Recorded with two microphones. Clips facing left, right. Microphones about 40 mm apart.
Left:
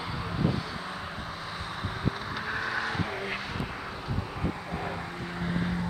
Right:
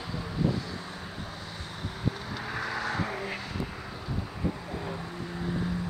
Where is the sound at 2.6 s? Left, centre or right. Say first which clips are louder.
Even; centre.